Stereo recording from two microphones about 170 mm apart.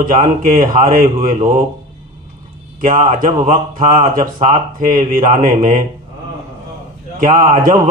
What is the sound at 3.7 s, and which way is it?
A man's voice, 55° right (ahead or behind).